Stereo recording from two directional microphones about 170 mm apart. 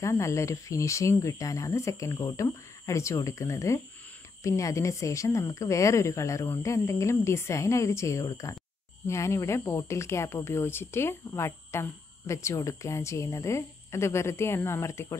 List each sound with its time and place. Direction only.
0.0 s speech: 15° left (ahead or behind)